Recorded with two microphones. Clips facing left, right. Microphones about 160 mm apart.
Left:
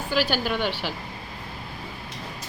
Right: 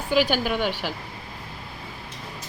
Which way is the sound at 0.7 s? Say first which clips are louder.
Right 1 dB; 45° right (ahead or behind).